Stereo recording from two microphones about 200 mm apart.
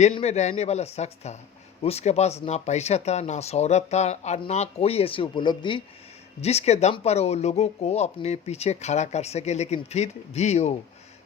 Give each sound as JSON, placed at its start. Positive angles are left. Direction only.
{"t": 0.0, "sound": "speech", "side_deg": 30}